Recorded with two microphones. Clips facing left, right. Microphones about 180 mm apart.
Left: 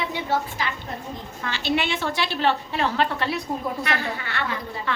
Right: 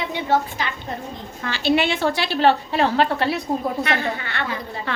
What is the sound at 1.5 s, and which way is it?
A woman's voice, 35° right (ahead or behind).